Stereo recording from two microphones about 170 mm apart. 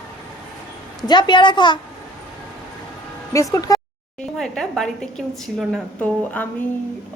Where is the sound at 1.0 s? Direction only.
25° left (ahead or behind).